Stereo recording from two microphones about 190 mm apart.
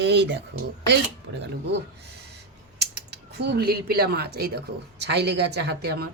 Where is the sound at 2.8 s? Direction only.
60° right (ahead or behind).